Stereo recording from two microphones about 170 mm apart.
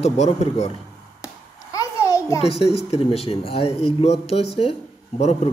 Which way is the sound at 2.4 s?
35° left (ahead or behind).